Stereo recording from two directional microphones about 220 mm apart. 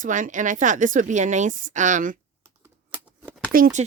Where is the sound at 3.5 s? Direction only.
35° right (ahead or behind).